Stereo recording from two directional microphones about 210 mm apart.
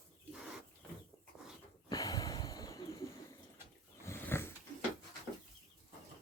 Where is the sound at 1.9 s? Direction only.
15° left (ahead or behind).